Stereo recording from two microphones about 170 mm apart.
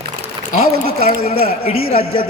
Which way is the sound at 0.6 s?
65° right (ahead or behind).